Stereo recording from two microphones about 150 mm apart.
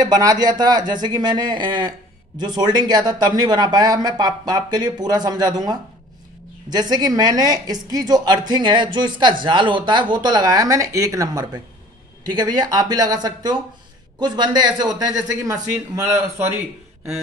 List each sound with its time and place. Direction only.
0.0 s speech: 25° right (ahead or behind)